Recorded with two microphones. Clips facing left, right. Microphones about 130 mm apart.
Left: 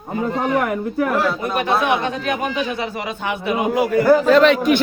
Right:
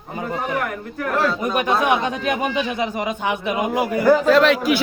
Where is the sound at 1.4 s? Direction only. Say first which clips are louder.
Even; 15° right (ahead or behind).